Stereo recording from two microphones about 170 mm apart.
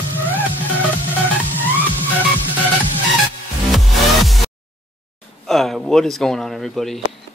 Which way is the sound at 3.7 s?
Centre (ahead or behind).